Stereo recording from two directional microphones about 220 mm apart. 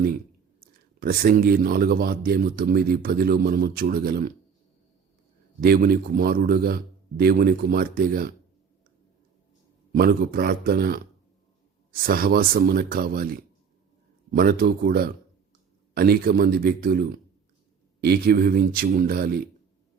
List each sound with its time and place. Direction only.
0.9 s speech: 40° right (ahead or behind)
5.5 s speech: 45° right (ahead or behind)
9.9 s speech: 40° right (ahead or behind)